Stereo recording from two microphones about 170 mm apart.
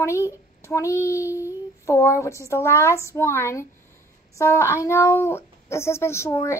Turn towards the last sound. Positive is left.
turn(degrees=15)  # may be behind; listen again after turning